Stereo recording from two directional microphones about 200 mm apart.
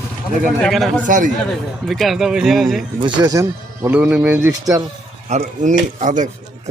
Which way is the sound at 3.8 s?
5° right (ahead or behind).